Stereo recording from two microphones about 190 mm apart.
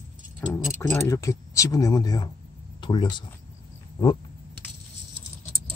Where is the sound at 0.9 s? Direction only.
15° left (ahead or behind).